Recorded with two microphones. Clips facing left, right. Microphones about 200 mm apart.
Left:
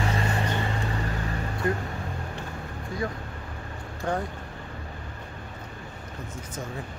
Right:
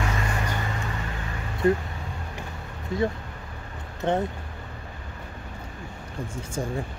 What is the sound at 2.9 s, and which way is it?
Speech, 25° right (ahead or behind).